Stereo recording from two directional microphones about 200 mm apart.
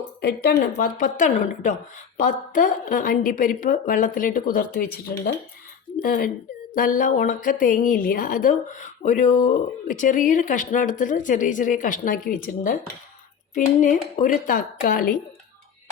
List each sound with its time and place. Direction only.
0.2 s speech: 50° left (ahead or behind)